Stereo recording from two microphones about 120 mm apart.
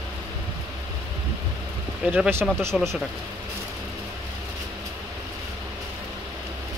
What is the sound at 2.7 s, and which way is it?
Speech, 5° left (ahead or behind).